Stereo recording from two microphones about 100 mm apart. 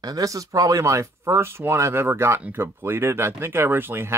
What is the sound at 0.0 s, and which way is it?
Speech, 35° right (ahead or behind).